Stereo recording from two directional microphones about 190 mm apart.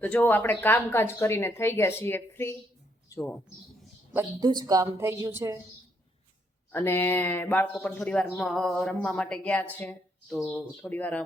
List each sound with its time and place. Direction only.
0.0 s speech: 10° left (ahead or behind)
4.1 s a woman's voice: 15° right (ahead or behind)
6.7 s speech: 10° left (ahead or behind)